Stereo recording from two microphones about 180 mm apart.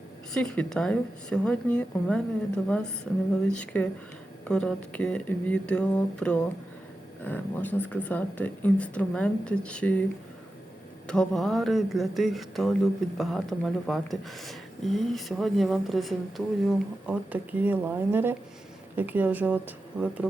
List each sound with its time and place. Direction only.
0.3 s speech: 5° left (ahead or behind)
11.1 s speech: centre (ahead or behind)